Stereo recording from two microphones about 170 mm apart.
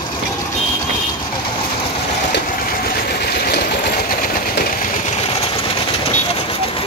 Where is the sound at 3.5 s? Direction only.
70° left (ahead or behind).